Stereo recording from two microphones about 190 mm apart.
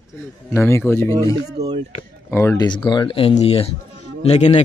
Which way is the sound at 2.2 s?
15° left (ahead or behind).